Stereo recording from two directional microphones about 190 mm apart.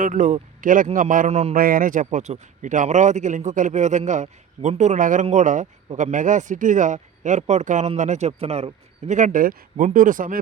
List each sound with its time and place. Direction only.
0.0 s speech: 45° right (ahead or behind)
1.5 s a man's voice: 50° right (ahead or behind)